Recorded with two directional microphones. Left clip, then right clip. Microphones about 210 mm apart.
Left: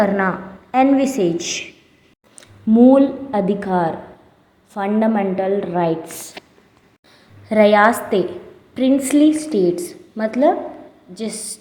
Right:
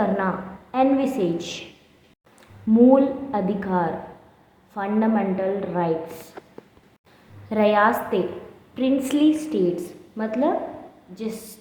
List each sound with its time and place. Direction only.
0.0 s a woman's voice: 30° left (ahead or behind)
7.4 s a woman's voice: 30° left (ahead or behind)